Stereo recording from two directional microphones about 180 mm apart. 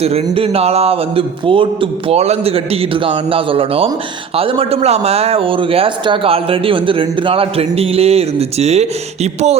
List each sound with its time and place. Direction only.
0.0 s a man's voice: 35° right (ahead or behind)